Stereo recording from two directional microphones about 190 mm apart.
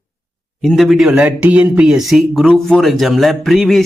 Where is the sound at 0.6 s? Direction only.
Centre (ahead or behind).